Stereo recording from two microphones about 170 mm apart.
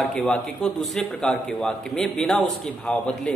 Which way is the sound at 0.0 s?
5° left (ahead or behind).